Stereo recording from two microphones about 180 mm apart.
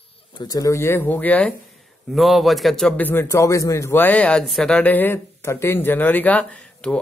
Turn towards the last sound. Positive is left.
turn(degrees=5)  # may be behind; listen again after turning